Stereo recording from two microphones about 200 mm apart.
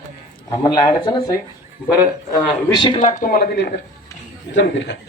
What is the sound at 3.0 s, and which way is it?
Speech, 45° left (ahead or behind).